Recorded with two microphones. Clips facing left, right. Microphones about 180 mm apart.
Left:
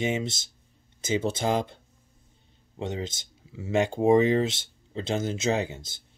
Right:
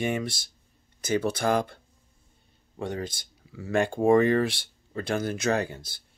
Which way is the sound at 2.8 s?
20° left (ahead or behind).